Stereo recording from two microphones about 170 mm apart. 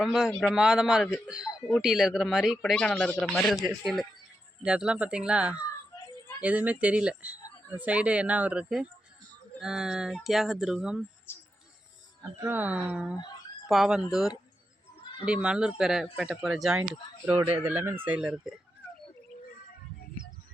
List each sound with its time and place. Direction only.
0.0 s a man's voice: centre (ahead or behind)
5.5 s a sound: 20° left (ahead or behind)
6.4 s a man's voice: 10° right (ahead or behind)
11.3 s mouse: 15° left (ahead or behind)
12.4 s a man's voice: 10° right (ahead or behind)